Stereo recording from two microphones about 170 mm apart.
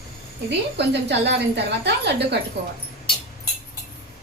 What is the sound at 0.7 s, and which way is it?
A woman's voice, 90° right.